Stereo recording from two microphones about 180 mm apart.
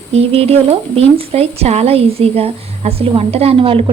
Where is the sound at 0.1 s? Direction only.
35° right (ahead or behind).